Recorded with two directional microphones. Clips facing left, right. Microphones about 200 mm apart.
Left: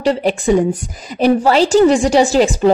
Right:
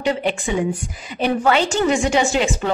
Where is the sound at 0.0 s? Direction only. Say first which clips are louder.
Left 6 dB; 35° left (ahead or behind).